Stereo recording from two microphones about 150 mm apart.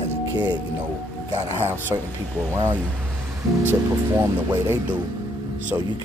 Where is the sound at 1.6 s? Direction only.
15° right (ahead or behind).